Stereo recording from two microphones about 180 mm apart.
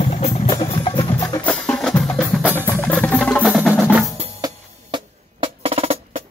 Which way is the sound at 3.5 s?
5° right (ahead or behind).